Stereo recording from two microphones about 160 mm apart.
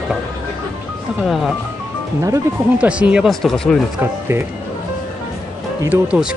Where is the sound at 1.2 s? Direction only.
Centre (ahead or behind).